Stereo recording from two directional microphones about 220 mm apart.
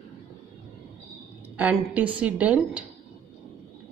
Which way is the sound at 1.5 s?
5° right (ahead or behind).